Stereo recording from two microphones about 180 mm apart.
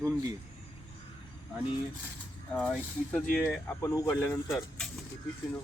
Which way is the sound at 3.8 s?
20° left (ahead or behind).